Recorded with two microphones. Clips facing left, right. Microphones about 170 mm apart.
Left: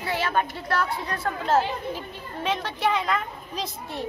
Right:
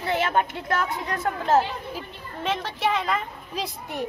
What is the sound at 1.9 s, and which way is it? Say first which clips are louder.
A woman's voice: left 1 dB; centre (ahead or behind).